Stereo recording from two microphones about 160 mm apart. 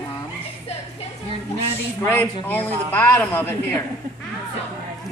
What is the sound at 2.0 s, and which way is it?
Speech, 10° left (ahead or behind).